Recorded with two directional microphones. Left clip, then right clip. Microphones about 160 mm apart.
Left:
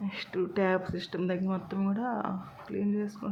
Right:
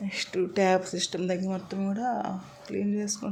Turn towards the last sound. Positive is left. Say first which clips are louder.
# right 2 dB
turn(degrees=-10)  # may be behind; listen again after turning